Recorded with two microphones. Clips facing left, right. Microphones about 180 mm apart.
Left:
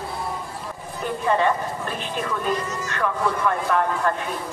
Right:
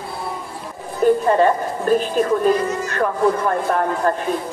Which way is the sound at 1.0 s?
40° right (ahead or behind).